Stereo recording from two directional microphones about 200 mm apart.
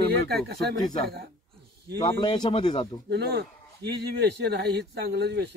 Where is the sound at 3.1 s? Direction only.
55° right (ahead or behind).